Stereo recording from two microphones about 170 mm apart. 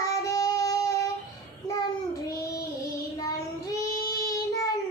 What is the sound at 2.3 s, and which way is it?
Child singing, 20° left (ahead or behind).